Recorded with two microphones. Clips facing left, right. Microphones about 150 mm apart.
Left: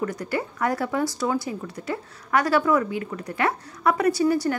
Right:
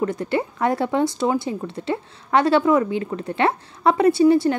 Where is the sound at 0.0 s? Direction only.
25° right (ahead or behind).